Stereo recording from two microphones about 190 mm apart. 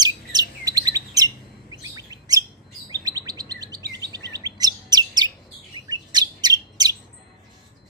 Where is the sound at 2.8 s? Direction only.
20° right (ahead or behind).